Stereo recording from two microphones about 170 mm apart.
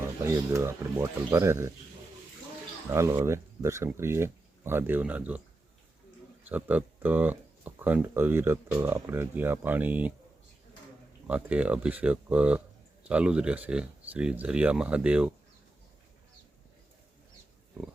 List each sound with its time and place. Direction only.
0.0 s speech: 15° right (ahead or behind)
2.9 s speech: 15° right (ahead or behind)
6.5 s speech: 10° right (ahead or behind)
11.3 s speech: 10° right (ahead or behind)